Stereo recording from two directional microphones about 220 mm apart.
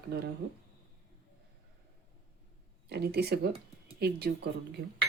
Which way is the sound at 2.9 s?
45° right (ahead or behind).